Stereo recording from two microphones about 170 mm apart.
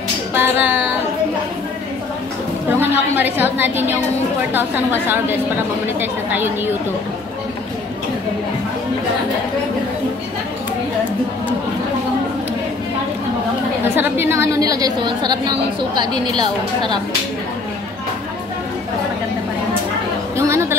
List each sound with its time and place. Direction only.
0.3 s music: 10° right (ahead or behind)
2.7 s a woman's voice: 10° right (ahead or behind)
13.8 s a woman's voice: 15° right (ahead or behind)
20.3 s music: 15° right (ahead or behind)